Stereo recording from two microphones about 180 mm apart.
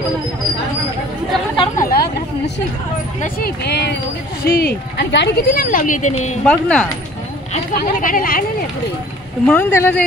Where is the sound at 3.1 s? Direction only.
55° left (ahead or behind).